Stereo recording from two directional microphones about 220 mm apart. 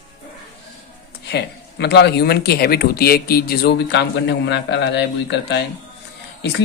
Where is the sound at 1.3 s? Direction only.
50° left (ahead or behind).